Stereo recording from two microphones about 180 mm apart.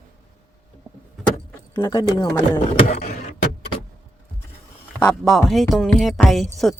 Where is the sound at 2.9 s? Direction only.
55° left (ahead or behind).